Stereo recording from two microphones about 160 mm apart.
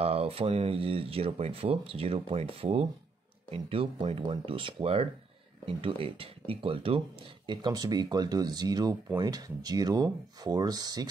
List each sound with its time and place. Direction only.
0.0 s speech: 40° right (ahead or behind)